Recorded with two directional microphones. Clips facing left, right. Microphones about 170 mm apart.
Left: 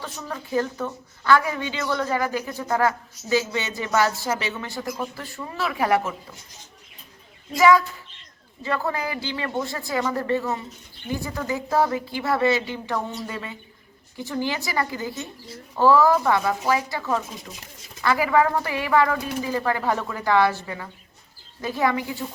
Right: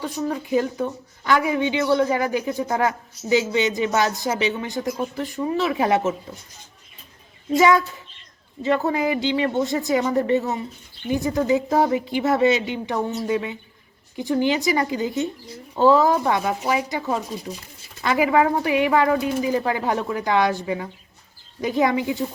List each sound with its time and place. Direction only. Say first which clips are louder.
0.0 s speech: right 8 dB; 15° right (ahead or behind)
7.5 s speech: right 1 dB; 25° right (ahead or behind)